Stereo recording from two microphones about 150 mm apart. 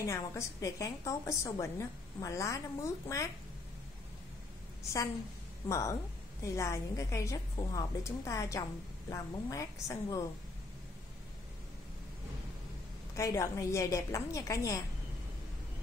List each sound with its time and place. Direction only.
0.0 s a woman's voice: 20° left (ahead or behind)
5.7 s a woman's voice: 20° left (ahead or behind)
13.1 s a woman's voice: 20° left (ahead or behind)